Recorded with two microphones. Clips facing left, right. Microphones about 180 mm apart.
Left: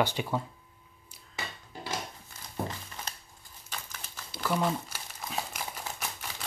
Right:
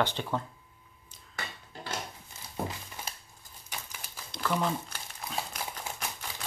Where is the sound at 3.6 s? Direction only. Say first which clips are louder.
Even; 10° right (ahead or behind).